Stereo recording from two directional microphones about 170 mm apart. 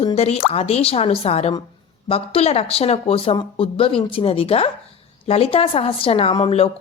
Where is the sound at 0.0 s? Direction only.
35° left (ahead or behind).